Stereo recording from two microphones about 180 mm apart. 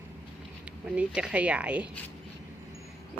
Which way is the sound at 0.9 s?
5° right (ahead or behind).